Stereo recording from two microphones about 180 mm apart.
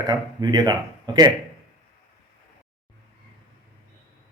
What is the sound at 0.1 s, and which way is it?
Speech, 20° right (ahead or behind).